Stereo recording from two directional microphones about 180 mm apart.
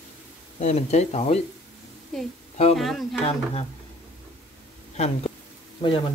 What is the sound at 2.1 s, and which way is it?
Speech, centre (ahead or behind).